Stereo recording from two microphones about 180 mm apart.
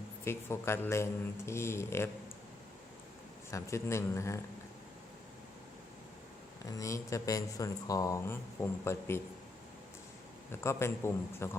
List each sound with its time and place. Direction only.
0.3 s speech: 15° left (ahead or behind)
3.5 s speech: 15° left (ahead or behind)
6.7 s speech: 20° left (ahead or behind)
10.5 s speech: 15° left (ahead or behind)